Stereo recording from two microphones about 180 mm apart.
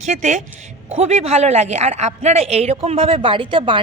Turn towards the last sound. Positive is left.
turn(degrees=-30)  # may be behind; listen again after turning